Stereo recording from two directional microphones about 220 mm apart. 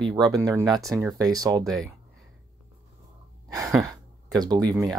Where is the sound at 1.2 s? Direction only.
15° right (ahead or behind).